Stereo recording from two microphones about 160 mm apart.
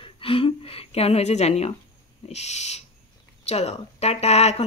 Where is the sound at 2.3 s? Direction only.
45° left (ahead or behind).